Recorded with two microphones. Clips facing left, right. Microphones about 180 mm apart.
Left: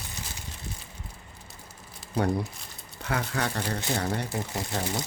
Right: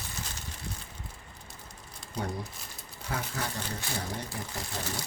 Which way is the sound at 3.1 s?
70° left (ahead or behind).